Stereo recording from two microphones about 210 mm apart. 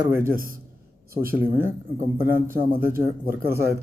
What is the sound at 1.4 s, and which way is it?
Speech, 10° right (ahead or behind).